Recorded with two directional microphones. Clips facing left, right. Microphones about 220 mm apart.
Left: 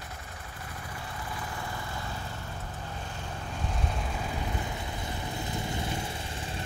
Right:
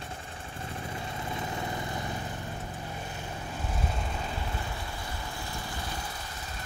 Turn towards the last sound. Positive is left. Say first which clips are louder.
# left 4 dB
turn(degrees=25)  # may be behind; listen again after turning